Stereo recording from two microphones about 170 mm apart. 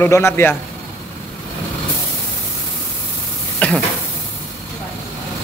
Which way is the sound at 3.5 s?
5° left (ahead or behind).